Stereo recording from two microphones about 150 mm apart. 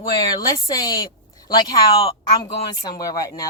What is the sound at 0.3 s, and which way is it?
Speech, 25° left (ahead or behind).